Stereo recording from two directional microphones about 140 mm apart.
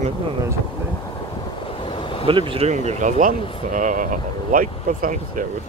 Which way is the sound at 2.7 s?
55° right (ahead or behind).